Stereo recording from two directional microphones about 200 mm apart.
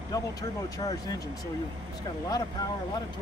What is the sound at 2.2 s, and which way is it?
Speech, 20° left (ahead or behind).